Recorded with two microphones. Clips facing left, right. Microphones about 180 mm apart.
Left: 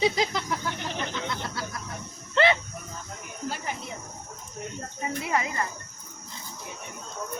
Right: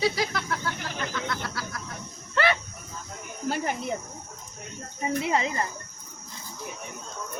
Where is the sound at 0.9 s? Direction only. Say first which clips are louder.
Even; 20° left (ahead or behind).